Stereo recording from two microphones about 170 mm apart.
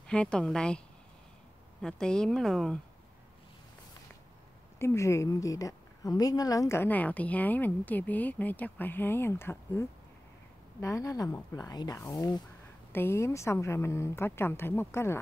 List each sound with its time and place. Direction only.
0.0 s a woman's voice: 5° left (ahead or behind)
4.7 s a woman's voice: 15° left (ahead or behind)